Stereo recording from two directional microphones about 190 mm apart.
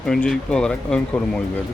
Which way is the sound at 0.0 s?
5° left (ahead or behind).